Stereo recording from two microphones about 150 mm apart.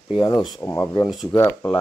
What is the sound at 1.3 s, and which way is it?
Speech, 20° left (ahead or behind).